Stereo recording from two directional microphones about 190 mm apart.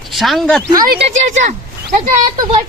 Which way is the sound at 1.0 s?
40° right (ahead or behind).